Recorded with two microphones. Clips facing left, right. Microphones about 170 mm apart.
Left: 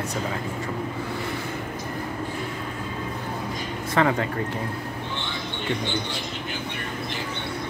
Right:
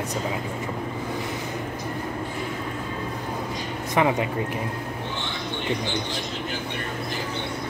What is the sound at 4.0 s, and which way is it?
Speech, 15° right (ahead or behind).